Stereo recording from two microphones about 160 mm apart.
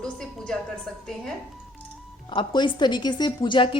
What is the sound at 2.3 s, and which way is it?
A woman's voice, 30° left (ahead or behind).